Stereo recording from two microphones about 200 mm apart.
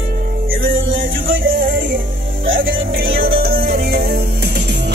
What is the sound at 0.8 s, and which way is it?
Music, 75° right (ahead or behind).